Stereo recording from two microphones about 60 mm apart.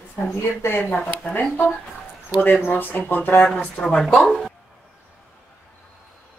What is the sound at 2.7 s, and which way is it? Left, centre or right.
Speech, left.